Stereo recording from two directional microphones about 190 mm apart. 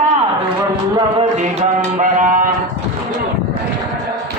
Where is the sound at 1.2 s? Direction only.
40° right (ahead or behind).